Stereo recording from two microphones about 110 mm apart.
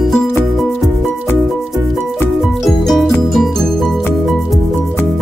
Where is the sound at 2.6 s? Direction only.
Centre (ahead or behind).